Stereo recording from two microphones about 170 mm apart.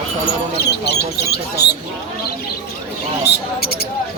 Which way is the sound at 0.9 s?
75° left (ahead or behind).